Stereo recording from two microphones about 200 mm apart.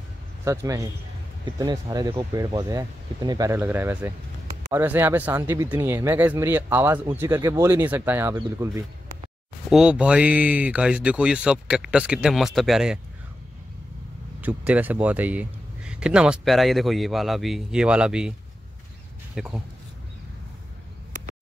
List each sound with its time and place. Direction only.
0.5 s speech: 15° right (ahead or behind)
9.7 s speech: 5° right (ahead or behind)
14.4 s speech: 5° right (ahead or behind)
19.3 s speech: 5° right (ahead or behind)